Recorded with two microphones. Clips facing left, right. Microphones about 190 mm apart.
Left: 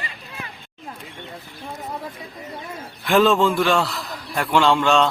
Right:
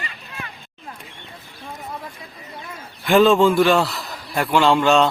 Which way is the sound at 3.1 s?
Centre (ahead or behind).